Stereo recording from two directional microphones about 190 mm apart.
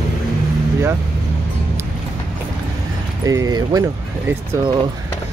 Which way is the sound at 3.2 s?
20° right (ahead or behind).